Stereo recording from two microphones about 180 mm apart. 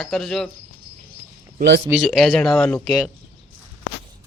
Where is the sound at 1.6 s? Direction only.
65° right (ahead or behind).